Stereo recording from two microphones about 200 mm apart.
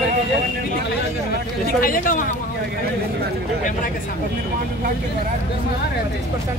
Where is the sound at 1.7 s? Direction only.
45° left (ahead or behind).